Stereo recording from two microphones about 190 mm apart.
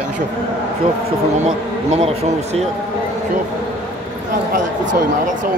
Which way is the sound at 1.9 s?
35° right (ahead or behind).